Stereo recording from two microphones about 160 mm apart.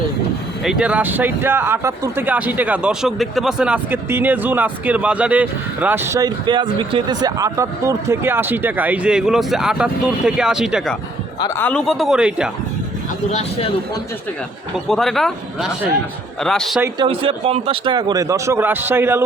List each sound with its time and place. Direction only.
0.6 s speech: 5° right (ahead or behind)
11.5 s speech: 10° left (ahead or behind)
14.8 s speech: centre (ahead or behind)
17.1 s a man's voice: 35° right (ahead or behind); by 19.2 s 15° right (ahead or behind)